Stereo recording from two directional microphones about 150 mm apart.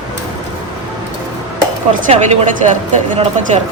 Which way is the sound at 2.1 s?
45° right (ahead or behind).